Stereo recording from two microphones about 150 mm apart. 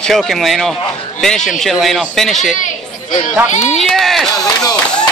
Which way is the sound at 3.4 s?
50° left (ahead or behind).